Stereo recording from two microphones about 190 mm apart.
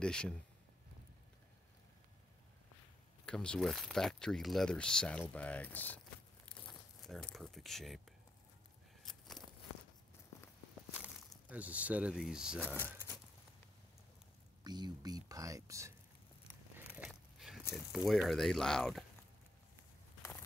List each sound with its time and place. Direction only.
0.0 s speech: 5° left (ahead or behind)
3.3 s speech: 5° left (ahead or behind)
7.0 s speech: centre (ahead or behind)
10.9 s speech: 5° right (ahead or behind)
12.5 s speech: 10° left (ahead or behind)
14.6 s speech: 20° right (ahead or behind)
16.7 s a sound: 10° right (ahead or behind)
17.7 s speech: centre (ahead or behind)